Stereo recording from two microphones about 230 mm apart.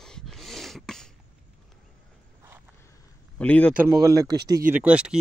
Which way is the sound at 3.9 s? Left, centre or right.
Centre.